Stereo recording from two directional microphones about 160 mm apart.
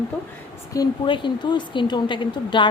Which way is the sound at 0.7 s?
30° left (ahead or behind).